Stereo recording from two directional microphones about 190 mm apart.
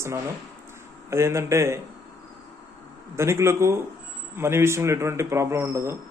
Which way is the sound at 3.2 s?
15° right (ahead or behind).